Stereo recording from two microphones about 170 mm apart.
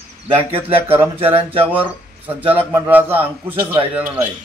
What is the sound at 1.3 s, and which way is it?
A man's voice, 10° right (ahead or behind).